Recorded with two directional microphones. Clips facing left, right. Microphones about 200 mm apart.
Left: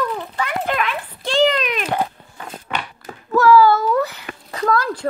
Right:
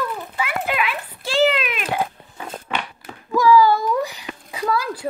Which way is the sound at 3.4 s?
15° right (ahead or behind).